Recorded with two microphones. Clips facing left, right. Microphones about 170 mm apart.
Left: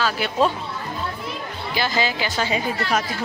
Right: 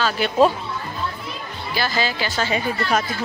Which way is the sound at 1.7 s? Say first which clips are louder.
Even; 15° left (ahead or behind).